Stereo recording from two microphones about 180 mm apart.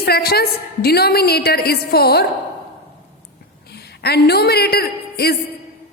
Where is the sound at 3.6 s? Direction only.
65° left (ahead or behind).